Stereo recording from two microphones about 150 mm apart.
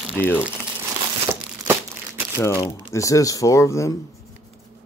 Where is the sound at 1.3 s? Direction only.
15° right (ahead or behind).